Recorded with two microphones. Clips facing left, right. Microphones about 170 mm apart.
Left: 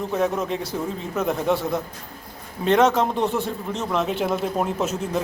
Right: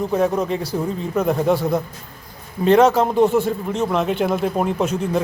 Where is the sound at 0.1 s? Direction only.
Centre (ahead or behind).